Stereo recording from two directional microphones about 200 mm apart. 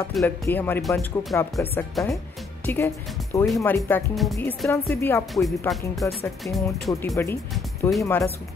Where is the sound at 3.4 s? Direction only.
Centre (ahead or behind).